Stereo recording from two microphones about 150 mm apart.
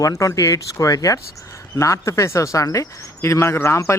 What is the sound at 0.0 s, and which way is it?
Speech, 20° left (ahead or behind).